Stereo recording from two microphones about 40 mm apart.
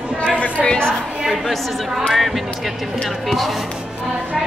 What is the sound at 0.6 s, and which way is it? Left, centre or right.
Speech, left.